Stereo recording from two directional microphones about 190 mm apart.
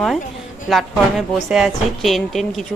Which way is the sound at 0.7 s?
Centre (ahead or behind).